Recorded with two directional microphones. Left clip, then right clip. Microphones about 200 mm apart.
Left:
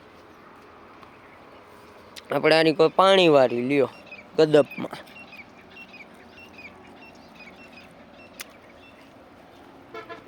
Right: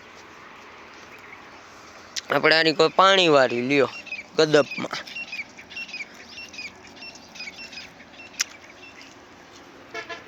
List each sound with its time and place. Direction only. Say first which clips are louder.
2.1 s speech: right 1 dB; 5° left (ahead or behind)
8.4 s a sound: right 13 dB; centre (ahead or behind)
9.9 s vehicle: right 4 dB; 60° left (ahead or behind)